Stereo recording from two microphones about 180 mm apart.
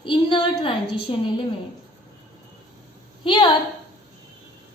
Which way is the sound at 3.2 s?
25° left (ahead or behind).